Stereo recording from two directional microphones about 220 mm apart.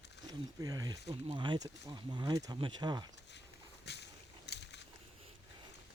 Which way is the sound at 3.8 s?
50° left (ahead or behind).